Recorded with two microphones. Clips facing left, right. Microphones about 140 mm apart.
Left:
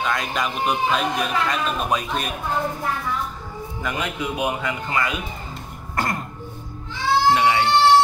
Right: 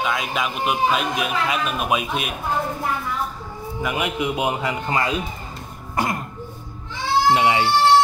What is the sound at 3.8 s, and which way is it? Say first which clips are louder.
A man's voice: right 3 dB; 10° right (ahead or behind).